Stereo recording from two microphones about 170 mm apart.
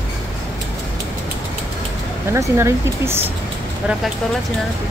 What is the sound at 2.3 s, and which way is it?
Speech, 15° right (ahead or behind).